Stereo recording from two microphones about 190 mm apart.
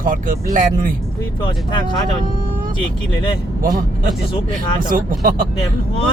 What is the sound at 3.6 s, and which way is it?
Speech, 45° right (ahead or behind).